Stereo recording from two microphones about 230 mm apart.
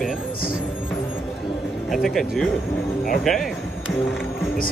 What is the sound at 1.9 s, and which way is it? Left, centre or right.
Speech, centre.